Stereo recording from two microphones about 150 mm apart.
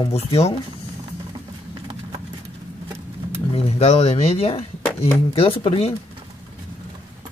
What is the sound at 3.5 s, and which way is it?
Speech, 45° left (ahead or behind).